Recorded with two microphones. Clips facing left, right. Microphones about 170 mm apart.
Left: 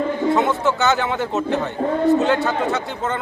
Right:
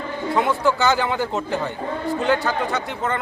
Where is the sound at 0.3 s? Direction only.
20° left (ahead or behind).